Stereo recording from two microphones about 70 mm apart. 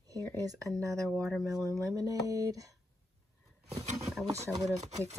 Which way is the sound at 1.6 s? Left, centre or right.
Right.